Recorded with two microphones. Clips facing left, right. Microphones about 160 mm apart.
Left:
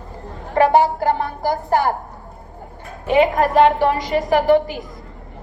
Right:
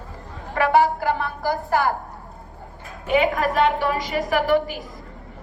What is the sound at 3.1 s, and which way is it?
Speech, 40° left (ahead or behind).